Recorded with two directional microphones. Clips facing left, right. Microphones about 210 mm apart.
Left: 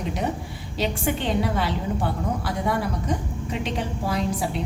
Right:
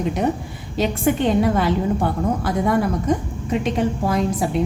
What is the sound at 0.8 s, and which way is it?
A woman's voice, 50° right (ahead or behind).